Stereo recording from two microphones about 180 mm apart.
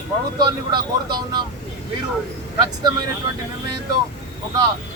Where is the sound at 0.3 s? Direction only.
25° right (ahead or behind).